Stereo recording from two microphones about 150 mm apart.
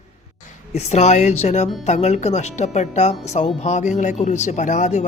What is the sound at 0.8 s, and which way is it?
Speech, 50° left (ahead or behind).